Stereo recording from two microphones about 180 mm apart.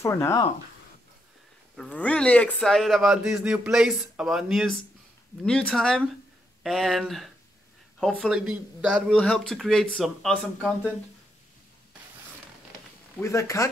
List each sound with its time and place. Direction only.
0.0 s speech: 15° left (ahead or behind)
1.8 s speech: 5° left (ahead or behind)
13.2 s speech: 15° left (ahead or behind)